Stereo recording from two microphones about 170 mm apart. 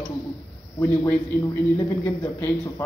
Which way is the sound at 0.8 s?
15° left (ahead or behind).